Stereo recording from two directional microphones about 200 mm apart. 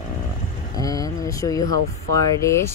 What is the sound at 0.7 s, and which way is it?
Speech, 15° left (ahead or behind).